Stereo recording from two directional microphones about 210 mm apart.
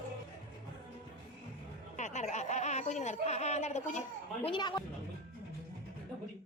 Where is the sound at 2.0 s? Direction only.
35° left (ahead or behind).